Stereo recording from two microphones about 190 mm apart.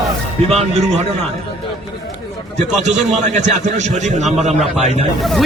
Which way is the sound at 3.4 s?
35° right (ahead or behind).